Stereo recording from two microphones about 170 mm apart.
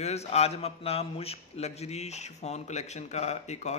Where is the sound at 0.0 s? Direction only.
40° left (ahead or behind).